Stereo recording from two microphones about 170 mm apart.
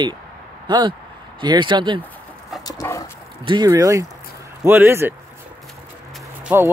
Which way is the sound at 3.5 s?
25° right (ahead or behind).